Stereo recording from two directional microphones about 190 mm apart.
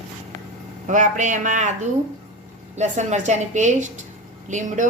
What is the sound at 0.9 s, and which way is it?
Speech, 40° right (ahead or behind).